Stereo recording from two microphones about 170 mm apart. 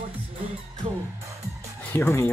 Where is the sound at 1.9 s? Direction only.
15° left (ahead or behind).